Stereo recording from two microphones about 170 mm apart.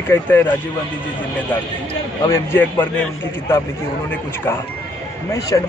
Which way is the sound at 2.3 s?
10° left (ahead or behind).